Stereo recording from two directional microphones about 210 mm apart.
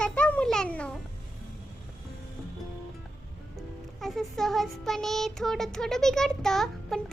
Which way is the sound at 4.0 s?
Centre (ahead or behind).